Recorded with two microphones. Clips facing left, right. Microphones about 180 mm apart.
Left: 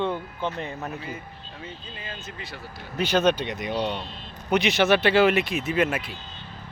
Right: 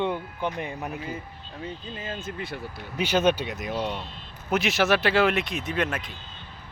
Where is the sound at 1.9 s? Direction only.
45° right (ahead or behind).